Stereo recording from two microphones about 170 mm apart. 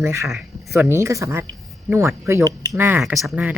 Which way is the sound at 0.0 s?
15° right (ahead or behind).